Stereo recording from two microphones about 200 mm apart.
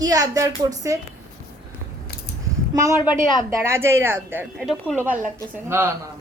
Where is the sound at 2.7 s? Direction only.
15° right (ahead or behind).